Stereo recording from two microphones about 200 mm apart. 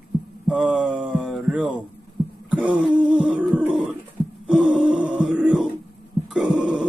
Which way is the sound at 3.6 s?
5° right (ahead or behind).